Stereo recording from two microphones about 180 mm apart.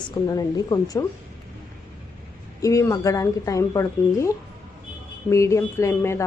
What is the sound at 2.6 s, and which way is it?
Speech, 20° left (ahead or behind).